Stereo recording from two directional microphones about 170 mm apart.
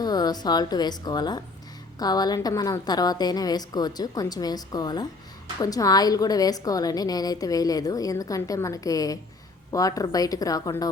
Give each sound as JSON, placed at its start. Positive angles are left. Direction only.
{"t": 0.0, "sound": "a woman's voice", "side_deg": 25}